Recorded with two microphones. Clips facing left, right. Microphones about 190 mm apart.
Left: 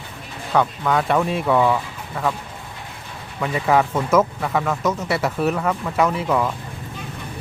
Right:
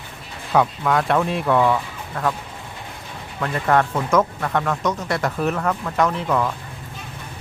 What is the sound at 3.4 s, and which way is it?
Speech, 5° left (ahead or behind).